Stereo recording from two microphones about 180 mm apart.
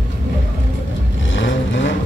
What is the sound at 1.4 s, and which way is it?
Vehicle, 90° left.